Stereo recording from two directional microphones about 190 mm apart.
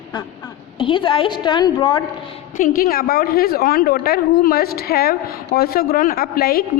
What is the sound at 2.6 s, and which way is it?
A woman's voice, 45° left (ahead or behind).